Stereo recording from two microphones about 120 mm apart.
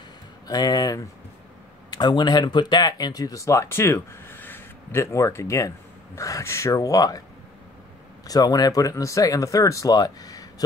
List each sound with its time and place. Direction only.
0.5 s speech: 35° left (ahead or behind)
8.3 s speech: 35° left (ahead or behind)